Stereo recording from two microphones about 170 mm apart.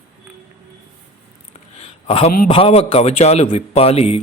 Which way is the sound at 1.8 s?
35° left (ahead or behind).